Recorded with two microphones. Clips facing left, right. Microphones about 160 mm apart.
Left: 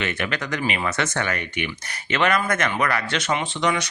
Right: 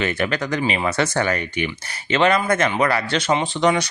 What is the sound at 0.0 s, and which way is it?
Speech, 35° right (ahead or behind).